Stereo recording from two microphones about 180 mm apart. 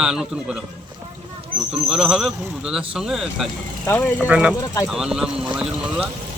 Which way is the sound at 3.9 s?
10° left (ahead or behind).